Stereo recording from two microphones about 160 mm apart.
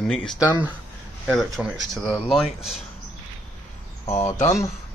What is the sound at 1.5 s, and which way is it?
Speech, centre (ahead or behind).